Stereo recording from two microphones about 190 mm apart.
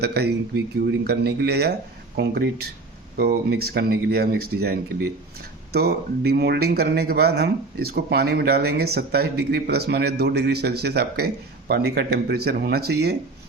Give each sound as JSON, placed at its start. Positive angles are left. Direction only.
{"t": 0.0, "sound": "a man's voice", "side_deg": -60}